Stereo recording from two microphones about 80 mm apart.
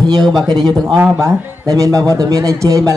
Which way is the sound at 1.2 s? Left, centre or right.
Right.